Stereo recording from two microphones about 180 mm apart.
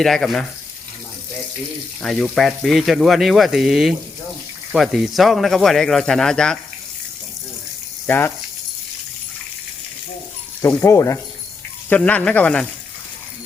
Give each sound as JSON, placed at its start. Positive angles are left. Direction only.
{"t": 0.0, "sound": "speech", "side_deg": 0}
{"t": 2.0, "sound": "speech", "side_deg": 5}
{"t": 8.0, "sound": "speech", "side_deg": 10}
{"t": 10.6, "sound": "speech", "side_deg": 15}